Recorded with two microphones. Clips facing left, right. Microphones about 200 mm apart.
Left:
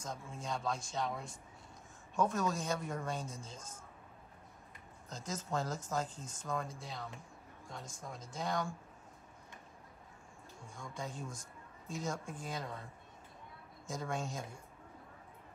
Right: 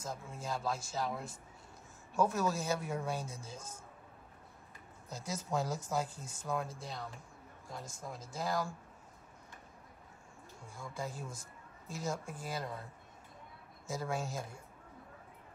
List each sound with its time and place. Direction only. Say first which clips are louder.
0.0 s speech: right 1 dB; 5° right (ahead or behind)
5.1 s speech: right 2 dB; 10° right (ahead or behind)
10.7 s speech: right 2 dB; 5° right (ahead or behind)
13.8 s speech: right 2 dB; 5° right (ahead or behind)